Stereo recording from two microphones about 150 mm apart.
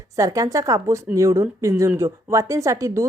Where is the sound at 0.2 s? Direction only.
25° right (ahead or behind).